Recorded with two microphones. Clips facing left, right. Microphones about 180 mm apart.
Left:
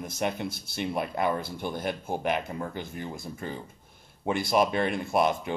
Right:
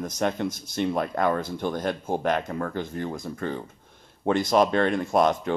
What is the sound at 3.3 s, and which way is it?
Speech, 65° right (ahead or behind).